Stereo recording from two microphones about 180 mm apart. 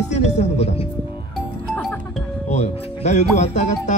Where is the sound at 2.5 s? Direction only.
40° left (ahead or behind).